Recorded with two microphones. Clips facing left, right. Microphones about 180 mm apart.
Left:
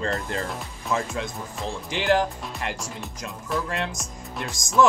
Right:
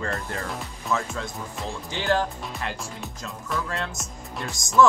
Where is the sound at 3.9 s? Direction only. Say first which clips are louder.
Left 1 dB; centre (ahead or behind).